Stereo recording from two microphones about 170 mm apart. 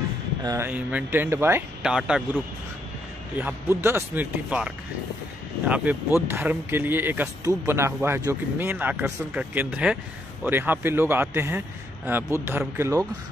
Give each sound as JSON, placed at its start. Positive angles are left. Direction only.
{"t": 0.4, "sound": "speech", "side_deg": -20}
{"t": 0.7, "sound": "speech", "side_deg": -10}
{"t": 5.9, "sound": "speech", "side_deg": -10}